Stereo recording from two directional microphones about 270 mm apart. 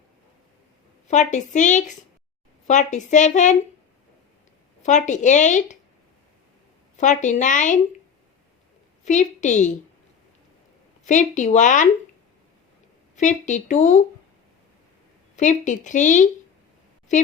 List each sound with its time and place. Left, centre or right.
1.0 s speech: left
4.8 s speech: left
6.9 s speech: left
9.0 s speech: left
11.0 s speech: left
13.1 s speech: left
15.4 s speech: left